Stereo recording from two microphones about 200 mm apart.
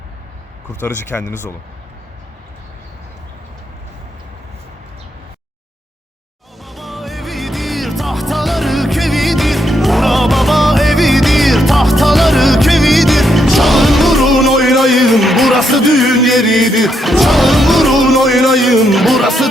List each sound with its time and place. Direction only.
0.8 s speech: 10° left (ahead or behind)
6.7 s music: centre (ahead or behind)